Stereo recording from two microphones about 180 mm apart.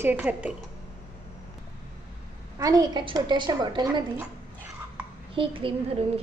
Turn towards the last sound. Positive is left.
turn(degrees=-30)  # may be behind; listen again after turning